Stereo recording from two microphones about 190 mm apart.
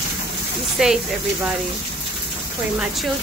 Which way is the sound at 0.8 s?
5° right (ahead or behind).